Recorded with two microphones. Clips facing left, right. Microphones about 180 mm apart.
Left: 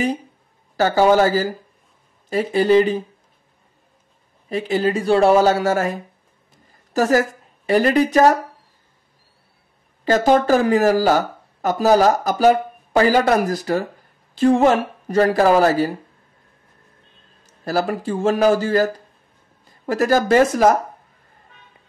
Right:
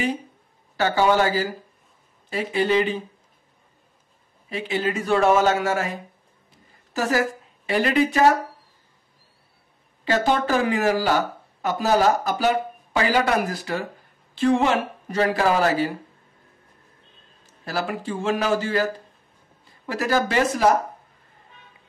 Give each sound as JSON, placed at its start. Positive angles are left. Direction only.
{"t": 0.7, "sound": "speech", "side_deg": 40}
{"t": 4.5, "sound": "speech", "side_deg": 40}
{"t": 10.0, "sound": "speech", "side_deg": 40}
{"t": 17.6, "sound": "speech", "side_deg": 40}
{"t": 19.9, "sound": "speech", "side_deg": 45}